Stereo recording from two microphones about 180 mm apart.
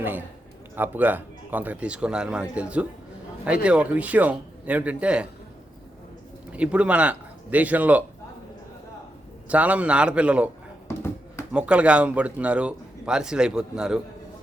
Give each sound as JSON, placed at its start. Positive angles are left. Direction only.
{"t": 0.0, "sound": "a man's voice", "side_deg": -10}
{"t": 6.5, "sound": "speech", "side_deg": -5}
{"t": 9.5, "sound": "speech", "side_deg": -5}
{"t": 11.5, "sound": "speech", "side_deg": -5}